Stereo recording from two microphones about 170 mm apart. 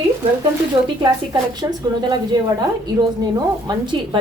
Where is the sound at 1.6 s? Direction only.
20° right (ahead or behind).